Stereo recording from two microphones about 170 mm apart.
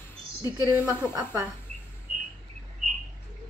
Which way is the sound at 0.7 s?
10° right (ahead or behind).